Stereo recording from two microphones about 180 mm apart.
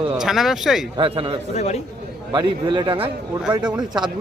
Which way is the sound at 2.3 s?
25° right (ahead or behind).